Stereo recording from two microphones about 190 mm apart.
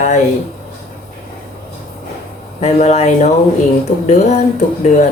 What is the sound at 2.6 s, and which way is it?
Speech, 35° left (ahead or behind).